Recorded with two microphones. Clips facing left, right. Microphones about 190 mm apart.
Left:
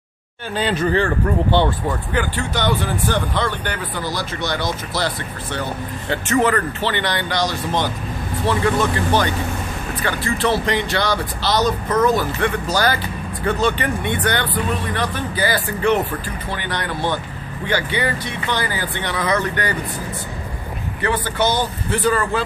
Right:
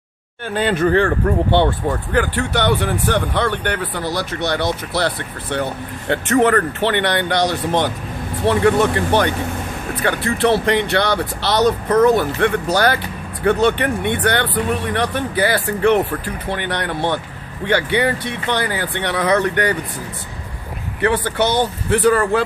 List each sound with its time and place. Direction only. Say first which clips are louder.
0.5 s speech: right 3 dB; 55° right (ahead or behind)
21.0 s speech: right 3 dB; 65° right (ahead or behind)